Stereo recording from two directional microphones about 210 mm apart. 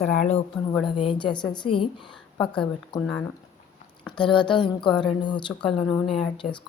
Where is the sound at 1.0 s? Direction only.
25° left (ahead or behind).